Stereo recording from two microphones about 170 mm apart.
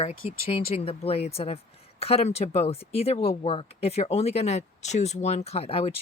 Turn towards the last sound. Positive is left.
turn(degrees=35)  # may be behind; listen again after turning